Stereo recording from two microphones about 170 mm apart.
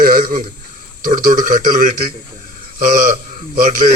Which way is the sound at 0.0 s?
60° right (ahead or behind).